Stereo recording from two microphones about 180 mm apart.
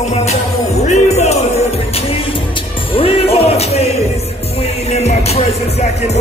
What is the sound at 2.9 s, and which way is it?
Music, 30° left (ahead or behind).